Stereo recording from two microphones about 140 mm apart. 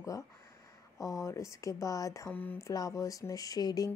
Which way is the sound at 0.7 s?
25° left (ahead or behind).